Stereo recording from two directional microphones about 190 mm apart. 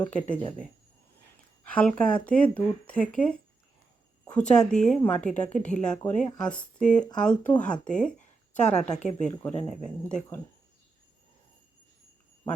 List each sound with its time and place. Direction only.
0.0 s speech: 5° left (ahead or behind)
1.6 s speech: 5° left (ahead or behind)
8.6 s a woman's voice: 35° left (ahead or behind)
9.2 s speech: 5° left (ahead or behind)